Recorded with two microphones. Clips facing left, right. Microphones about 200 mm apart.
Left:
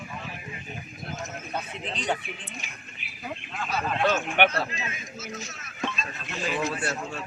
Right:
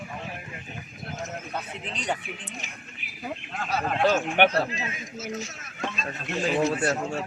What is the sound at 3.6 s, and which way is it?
Speech, 40° right (ahead or behind).